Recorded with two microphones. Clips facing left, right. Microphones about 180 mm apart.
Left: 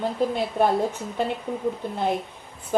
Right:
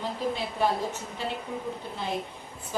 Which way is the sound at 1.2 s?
55° left (ahead or behind).